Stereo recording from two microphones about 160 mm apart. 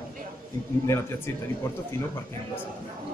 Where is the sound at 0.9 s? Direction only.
15° left (ahead or behind).